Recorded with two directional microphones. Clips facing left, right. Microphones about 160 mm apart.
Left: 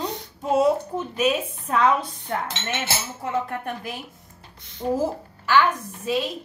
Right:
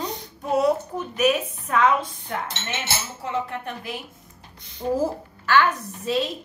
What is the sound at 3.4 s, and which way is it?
Speech, 45° left (ahead or behind).